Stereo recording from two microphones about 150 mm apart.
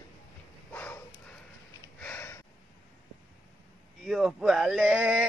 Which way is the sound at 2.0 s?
15° left (ahead or behind).